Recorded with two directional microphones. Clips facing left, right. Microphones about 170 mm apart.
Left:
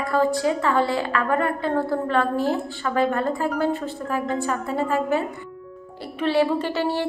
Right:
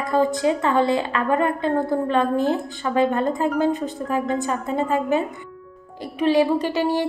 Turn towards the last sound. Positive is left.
turn(degrees=-15)  # may be behind; listen again after turning